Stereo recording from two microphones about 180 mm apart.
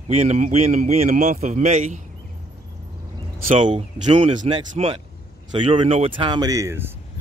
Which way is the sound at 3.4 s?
30° right (ahead or behind).